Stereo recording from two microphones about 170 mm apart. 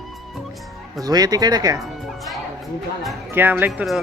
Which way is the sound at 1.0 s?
20° right (ahead or behind).